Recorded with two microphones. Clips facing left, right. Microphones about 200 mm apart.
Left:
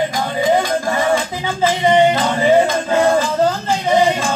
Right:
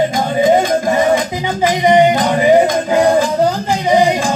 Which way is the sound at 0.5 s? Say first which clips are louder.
Right 4 dB; 20° right (ahead or behind).